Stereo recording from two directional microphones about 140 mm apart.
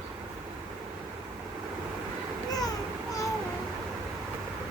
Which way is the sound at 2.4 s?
25° left (ahead or behind).